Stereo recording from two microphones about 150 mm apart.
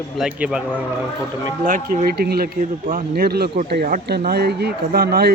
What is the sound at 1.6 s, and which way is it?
Speech, 65° right (ahead or behind).